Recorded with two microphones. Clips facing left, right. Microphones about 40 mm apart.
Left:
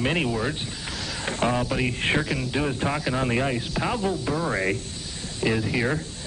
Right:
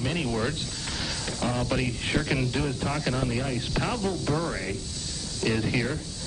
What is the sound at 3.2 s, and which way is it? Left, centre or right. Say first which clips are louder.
Speech: left 5 dB; left.